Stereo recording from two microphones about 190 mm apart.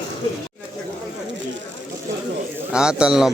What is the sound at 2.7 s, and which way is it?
Speech, 5° right (ahead or behind).